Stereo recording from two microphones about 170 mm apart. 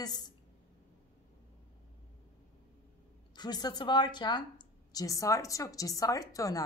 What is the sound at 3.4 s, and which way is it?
A woman's voice, 25° left (ahead or behind).